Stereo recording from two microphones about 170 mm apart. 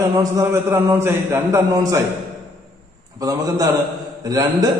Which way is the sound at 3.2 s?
20° right (ahead or behind).